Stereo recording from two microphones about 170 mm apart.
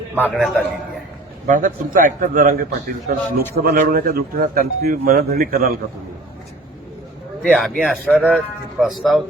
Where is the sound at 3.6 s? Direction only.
60° right (ahead or behind).